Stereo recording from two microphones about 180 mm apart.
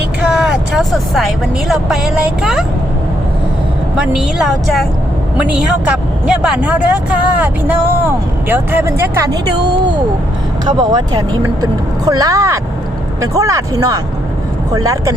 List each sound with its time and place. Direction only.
0.3 s speech: 5° right (ahead or behind)
3.9 s speech: 5° right (ahead or behind)
10.7 s speech: 25° right (ahead or behind)